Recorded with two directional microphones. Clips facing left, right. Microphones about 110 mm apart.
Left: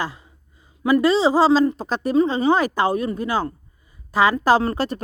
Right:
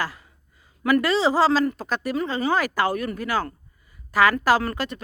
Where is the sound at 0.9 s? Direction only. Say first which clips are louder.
Left 3 dB; 20° left (ahead or behind).